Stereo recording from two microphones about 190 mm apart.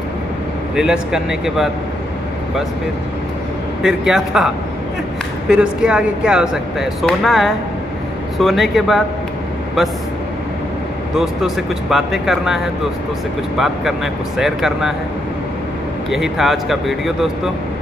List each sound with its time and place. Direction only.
0.7 s speech: 5° right (ahead or behind)
3.8 s speech: centre (ahead or behind)
5.5 s speech: 5° right (ahead or behind)
11.1 s speech: centre (ahead or behind)
16.1 s speech: centre (ahead or behind)